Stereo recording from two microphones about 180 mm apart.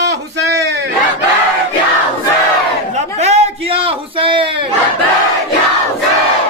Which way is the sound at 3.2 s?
40° right (ahead or behind).